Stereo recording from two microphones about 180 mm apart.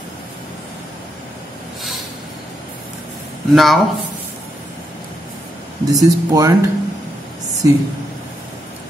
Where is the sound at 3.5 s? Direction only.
Centre (ahead or behind).